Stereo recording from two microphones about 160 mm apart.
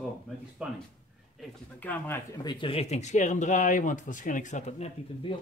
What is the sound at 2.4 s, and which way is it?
Speech, 30° left (ahead or behind).